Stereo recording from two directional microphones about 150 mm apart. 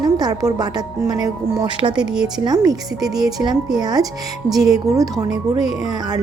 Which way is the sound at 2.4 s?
25° right (ahead or behind).